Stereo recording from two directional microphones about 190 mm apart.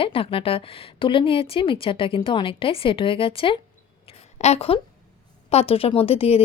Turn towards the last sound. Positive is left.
turn(degrees=30)  # may be behind; listen again after turning